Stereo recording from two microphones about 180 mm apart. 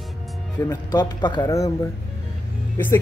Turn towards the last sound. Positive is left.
turn(degrees=10)  # may be behind; listen again after turning